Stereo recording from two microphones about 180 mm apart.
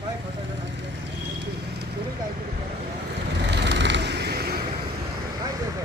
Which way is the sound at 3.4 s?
70° right (ahead or behind).